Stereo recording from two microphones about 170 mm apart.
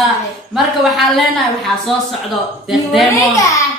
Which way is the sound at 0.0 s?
Centre (ahead or behind).